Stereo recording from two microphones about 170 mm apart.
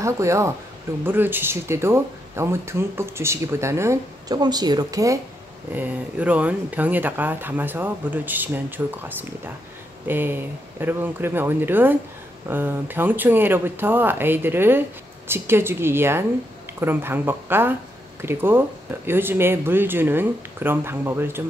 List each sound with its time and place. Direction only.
0.0 s speech: 15° right (ahead or behind)
10.0 s speech: 10° right (ahead or behind)